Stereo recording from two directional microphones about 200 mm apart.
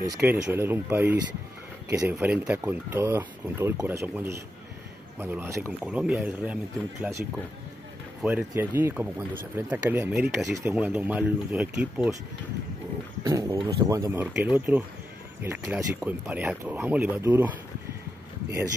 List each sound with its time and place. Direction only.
0.0 s speech: 10° right (ahead or behind)
13.2 s speech: 15° right (ahead or behind)